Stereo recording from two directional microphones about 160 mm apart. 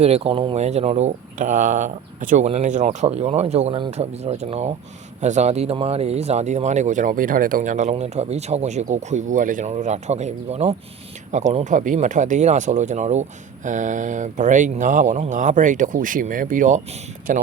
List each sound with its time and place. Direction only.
0.0 s speech: 40° right (ahead or behind); by 17.4 s 55° right (ahead or behind)